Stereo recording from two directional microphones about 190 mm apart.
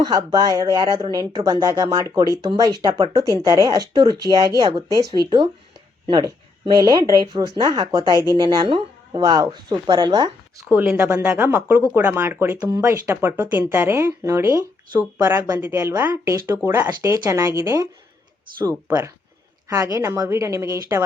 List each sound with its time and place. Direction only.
0.0 s speech: 20° right (ahead or behind)
10.7 s speech: 10° right (ahead or behind)
18.9 s speech: 15° right (ahead or behind)